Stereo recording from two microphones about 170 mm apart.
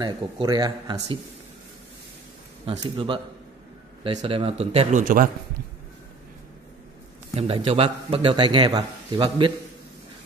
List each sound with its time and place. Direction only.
0.0 s speech: 25° right (ahead or behind)
2.8 s a man's voice: 30° right (ahead or behind)
5.0 s a man's voice: 55° right (ahead or behind)
7.3 s a man's voice: 35° right (ahead or behind)